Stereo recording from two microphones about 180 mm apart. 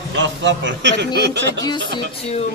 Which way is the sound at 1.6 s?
25° left (ahead or behind).